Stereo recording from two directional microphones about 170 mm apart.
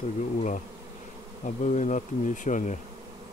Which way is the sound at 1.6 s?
45° left (ahead or behind).